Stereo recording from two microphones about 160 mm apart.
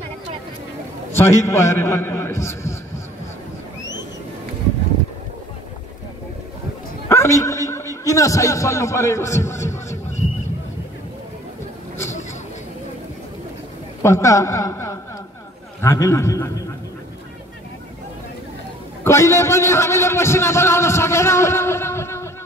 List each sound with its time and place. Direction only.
1.1 s a man's voice: 15° left (ahead or behind)
7.1 s a sound: 20° left (ahead or behind)
14.0 s a man's voice: 20° left (ahead or behind)
19.0 s a man's voice: 20° left (ahead or behind)